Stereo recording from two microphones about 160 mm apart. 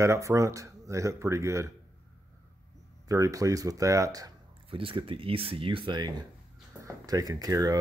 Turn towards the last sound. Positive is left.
turn(degrees=-25)  # may be behind; listen again after turning